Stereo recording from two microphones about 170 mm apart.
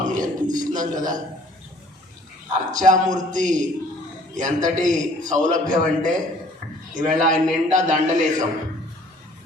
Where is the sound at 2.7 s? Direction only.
45° right (ahead or behind).